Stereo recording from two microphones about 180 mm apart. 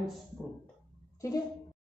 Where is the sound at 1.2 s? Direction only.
20° left (ahead or behind).